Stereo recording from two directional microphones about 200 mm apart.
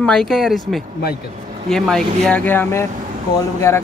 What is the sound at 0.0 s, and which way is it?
Speech, 5° left (ahead or behind).